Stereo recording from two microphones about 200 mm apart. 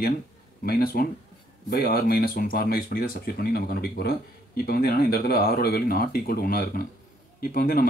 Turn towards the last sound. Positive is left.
turn(degrees=45)  # may be behind; listen again after turning